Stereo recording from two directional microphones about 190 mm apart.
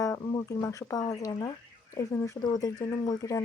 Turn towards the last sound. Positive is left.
turn(degrees=20)  # may be behind; listen again after turning